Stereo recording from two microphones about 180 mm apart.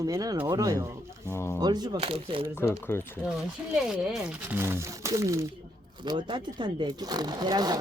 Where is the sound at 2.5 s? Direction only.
15° left (ahead or behind).